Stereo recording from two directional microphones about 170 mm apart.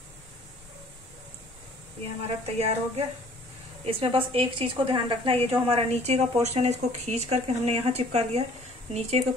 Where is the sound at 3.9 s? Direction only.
35° right (ahead or behind).